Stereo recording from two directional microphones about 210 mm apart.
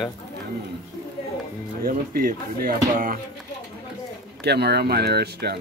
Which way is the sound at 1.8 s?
45° right (ahead or behind).